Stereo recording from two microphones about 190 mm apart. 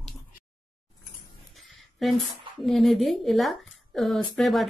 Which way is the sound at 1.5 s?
Centre (ahead or behind).